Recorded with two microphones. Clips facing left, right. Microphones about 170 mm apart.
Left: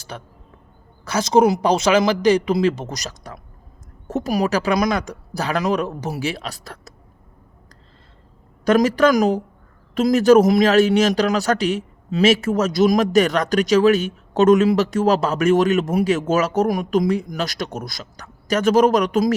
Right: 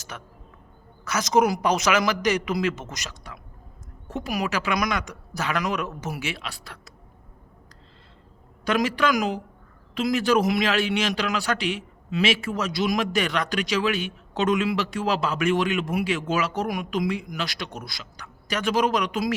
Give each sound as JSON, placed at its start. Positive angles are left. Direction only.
{"t": 0.1, "sound": "a woman's voice", "side_deg": 30}
{"t": 8.6, "sound": "a man's voice", "side_deg": 45}